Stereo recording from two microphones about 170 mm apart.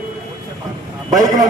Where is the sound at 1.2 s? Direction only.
20° right (ahead or behind).